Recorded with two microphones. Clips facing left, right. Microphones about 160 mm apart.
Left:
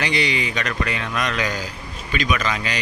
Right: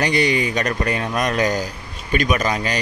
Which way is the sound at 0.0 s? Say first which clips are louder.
Right 4 dB; 45° right (ahead or behind).